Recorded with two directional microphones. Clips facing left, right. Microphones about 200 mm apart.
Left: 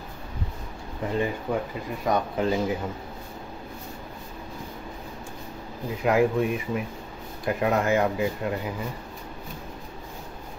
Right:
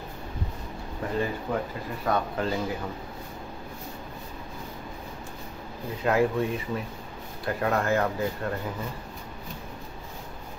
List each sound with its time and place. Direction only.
1.1 s speech: 15° left (ahead or behind)
6.0 s speech: 15° left (ahead or behind)